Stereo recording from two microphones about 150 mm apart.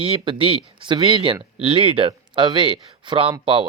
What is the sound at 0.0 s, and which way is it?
Speech, 35° right (ahead or behind).